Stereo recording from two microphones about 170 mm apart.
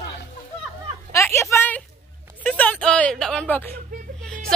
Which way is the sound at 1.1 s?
15° left (ahead or behind).